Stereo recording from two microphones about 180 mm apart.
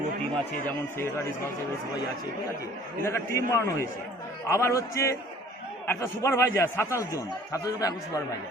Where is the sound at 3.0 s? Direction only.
15° left (ahead or behind).